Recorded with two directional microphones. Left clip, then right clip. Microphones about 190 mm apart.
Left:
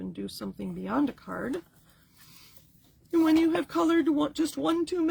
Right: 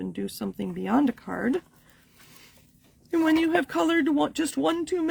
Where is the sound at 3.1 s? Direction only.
50° right (ahead or behind).